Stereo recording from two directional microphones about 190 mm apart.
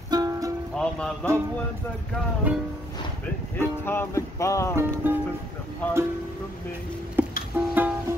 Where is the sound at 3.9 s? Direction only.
15° left (ahead or behind).